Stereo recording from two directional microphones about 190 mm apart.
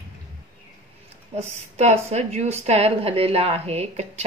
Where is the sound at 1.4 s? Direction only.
35° right (ahead or behind).